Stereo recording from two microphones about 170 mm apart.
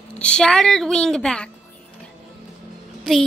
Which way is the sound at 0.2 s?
5° left (ahead or behind).